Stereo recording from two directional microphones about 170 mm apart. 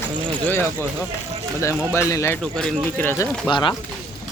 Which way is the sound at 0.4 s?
15° left (ahead or behind).